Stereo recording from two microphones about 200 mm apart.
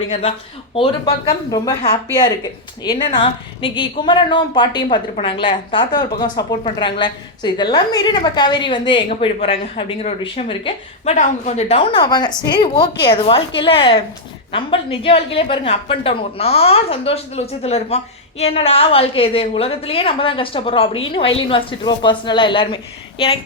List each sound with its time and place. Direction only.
0.1 s a woman's voice: 30° left (ahead or behind)
2.8 s a woman's voice: 20° left (ahead or behind)